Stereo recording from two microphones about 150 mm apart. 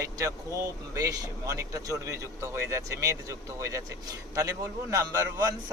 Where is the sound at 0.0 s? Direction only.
20° right (ahead or behind).